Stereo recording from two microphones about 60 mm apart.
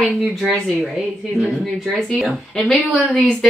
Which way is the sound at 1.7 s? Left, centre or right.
Centre.